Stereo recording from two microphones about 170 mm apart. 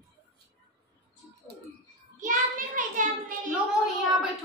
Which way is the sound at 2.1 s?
50° right (ahead or behind).